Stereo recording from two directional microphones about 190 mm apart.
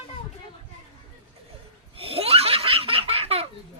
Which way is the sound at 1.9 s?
30° right (ahead or behind).